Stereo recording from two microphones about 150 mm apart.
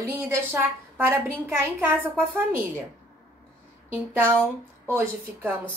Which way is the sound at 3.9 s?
15° right (ahead or behind).